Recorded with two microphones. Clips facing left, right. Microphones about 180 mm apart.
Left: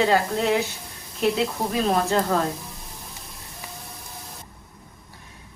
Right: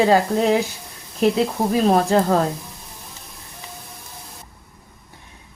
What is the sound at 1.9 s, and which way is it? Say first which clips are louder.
Speech: right 4 dB; 35° right (ahead or behind).